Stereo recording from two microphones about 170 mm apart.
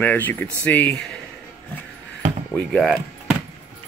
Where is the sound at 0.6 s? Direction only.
10° left (ahead or behind).